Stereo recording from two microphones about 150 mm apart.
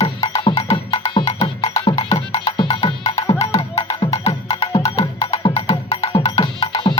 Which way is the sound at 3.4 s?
45° left (ahead or behind).